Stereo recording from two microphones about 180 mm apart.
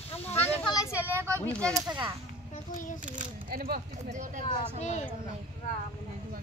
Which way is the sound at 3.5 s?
55° right (ahead or behind).